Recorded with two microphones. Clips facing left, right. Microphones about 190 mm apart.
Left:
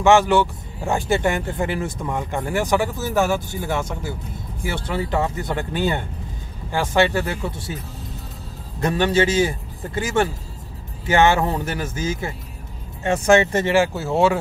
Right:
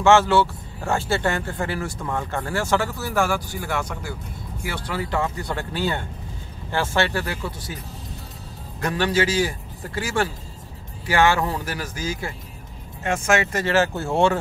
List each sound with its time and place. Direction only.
0.0 s a man's voice: 15° left (ahead or behind)
8.8 s a man's voice: 20° left (ahead or behind)
13.9 s speech: centre (ahead or behind)